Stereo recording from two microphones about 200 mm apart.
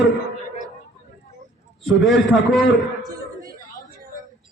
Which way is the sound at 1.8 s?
Centre (ahead or behind).